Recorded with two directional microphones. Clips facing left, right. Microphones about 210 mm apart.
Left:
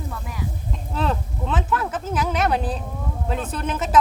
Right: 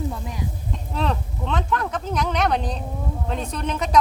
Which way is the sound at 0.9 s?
Centre (ahead or behind).